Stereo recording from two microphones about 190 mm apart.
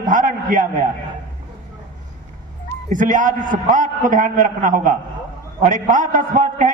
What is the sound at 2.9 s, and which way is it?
A man's voice, 45° right (ahead or behind).